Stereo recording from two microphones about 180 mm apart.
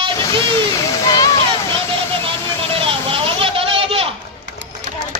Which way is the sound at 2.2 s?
30° right (ahead or behind).